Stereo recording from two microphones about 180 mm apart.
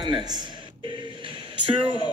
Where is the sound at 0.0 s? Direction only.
25° right (ahead or behind).